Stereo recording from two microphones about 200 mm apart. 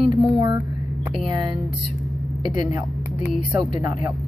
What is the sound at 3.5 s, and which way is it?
Speech, 15° right (ahead or behind).